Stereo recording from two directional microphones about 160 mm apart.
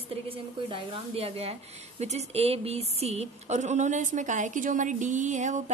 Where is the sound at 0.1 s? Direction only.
35° right (ahead or behind).